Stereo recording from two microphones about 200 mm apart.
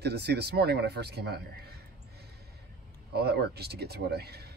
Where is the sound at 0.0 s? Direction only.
55° right (ahead or behind).